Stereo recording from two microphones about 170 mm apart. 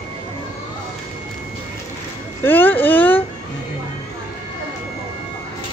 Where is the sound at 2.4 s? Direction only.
10° left (ahead or behind).